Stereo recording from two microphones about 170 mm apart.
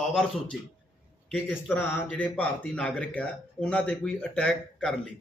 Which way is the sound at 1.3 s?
5° left (ahead or behind).